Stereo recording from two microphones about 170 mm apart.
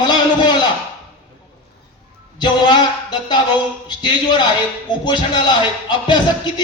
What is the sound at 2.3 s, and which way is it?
Speech, 25° left (ahead or behind).